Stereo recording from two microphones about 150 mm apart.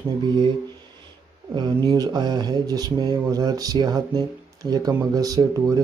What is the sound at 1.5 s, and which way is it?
Speech, 30° right (ahead or behind).